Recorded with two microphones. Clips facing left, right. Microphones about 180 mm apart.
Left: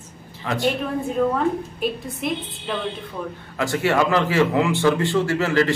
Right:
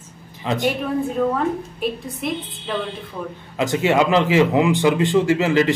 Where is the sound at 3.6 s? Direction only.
20° right (ahead or behind).